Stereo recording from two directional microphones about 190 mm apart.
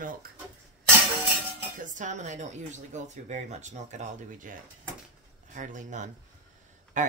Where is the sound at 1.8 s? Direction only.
40° right (ahead or behind).